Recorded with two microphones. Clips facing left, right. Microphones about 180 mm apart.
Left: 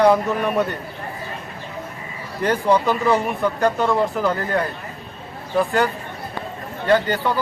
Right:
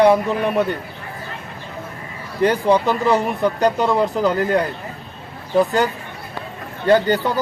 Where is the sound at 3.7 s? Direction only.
15° right (ahead or behind).